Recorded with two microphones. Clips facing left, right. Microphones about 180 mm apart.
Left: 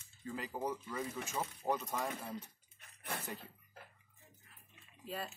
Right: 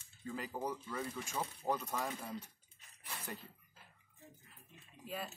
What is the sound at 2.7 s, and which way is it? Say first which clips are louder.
Bathtub: left 7 dB; 60° left (ahead or behind).